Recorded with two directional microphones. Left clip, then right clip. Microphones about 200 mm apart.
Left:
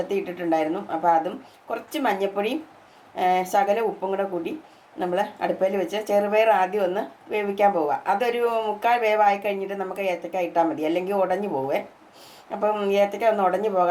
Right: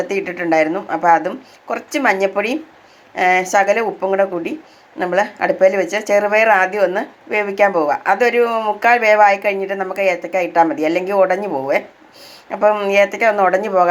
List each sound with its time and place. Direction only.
0.1 s speech: 20° right (ahead or behind)